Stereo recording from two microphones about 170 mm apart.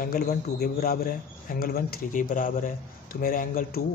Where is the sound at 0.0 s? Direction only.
60° left (ahead or behind).